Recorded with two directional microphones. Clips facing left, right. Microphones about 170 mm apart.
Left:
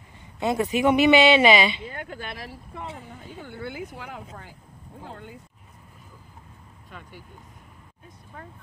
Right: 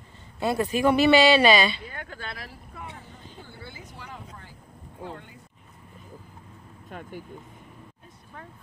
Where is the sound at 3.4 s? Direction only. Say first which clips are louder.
Left 9 dB; 65° left (ahead or behind).